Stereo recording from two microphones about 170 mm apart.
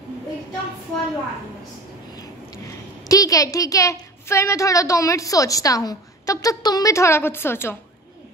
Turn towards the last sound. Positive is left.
turn(degrees=15)  # may be behind; listen again after turning